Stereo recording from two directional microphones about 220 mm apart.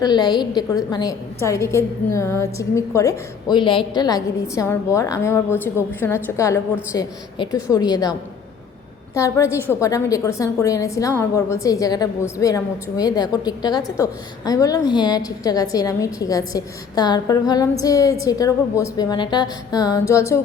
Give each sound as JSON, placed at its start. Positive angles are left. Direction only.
{"t": 0.0, "sound": "a woman's voice", "side_deg": 20}
{"t": 9.1, "sound": "a woman's voice", "side_deg": 15}